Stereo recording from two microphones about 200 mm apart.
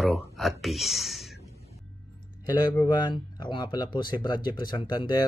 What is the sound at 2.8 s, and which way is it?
Speech, 20° left (ahead or behind).